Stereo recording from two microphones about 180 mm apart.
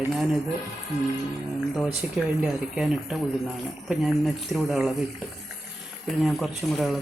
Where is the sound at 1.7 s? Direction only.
5° right (ahead or behind).